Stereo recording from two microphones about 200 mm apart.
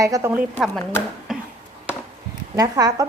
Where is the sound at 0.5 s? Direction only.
10° left (ahead or behind).